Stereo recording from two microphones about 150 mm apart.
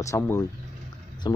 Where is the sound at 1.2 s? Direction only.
30° left (ahead or behind).